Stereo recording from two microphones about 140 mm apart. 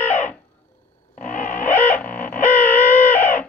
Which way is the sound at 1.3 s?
60° left (ahead or behind).